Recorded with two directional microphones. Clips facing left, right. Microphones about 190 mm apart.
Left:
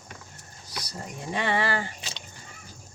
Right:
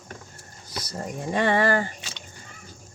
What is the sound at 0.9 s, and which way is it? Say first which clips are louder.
Speech: right 6 dB; 50° right (ahead or behind).